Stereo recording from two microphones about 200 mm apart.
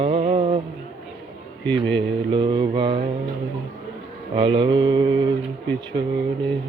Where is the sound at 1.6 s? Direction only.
25° right (ahead or behind).